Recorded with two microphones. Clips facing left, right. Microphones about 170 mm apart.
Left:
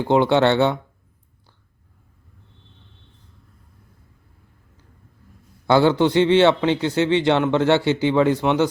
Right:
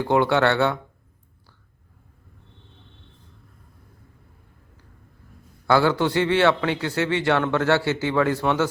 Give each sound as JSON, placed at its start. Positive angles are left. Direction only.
{"t": 0.0, "sound": "a man's voice", "side_deg": 20}
{"t": 5.6, "sound": "a man's voice", "side_deg": 20}